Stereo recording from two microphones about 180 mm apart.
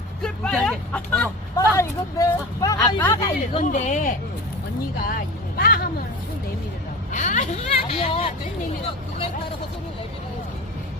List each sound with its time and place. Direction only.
0.2 s speech: 5° left (ahead or behind)
3.6 s a woman's voice: 45° left (ahead or behind)
4.9 s speech: 55° left (ahead or behind)
7.1 s vehicle: 45° left (ahead or behind)